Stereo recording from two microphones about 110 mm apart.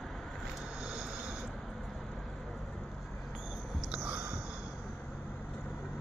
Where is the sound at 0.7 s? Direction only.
5° right (ahead or behind).